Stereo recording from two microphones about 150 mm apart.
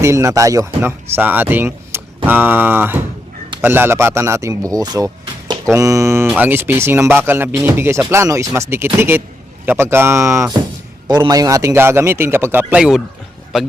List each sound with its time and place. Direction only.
0.0 s speech: 20° right (ahead or behind); by 13.7 s centre (ahead or behind)